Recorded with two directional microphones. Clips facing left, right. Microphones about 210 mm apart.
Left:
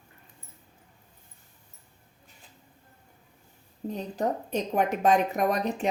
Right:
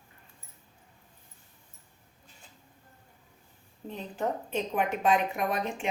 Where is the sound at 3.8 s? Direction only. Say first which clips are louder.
Left 3 dB; 40° left (ahead or behind).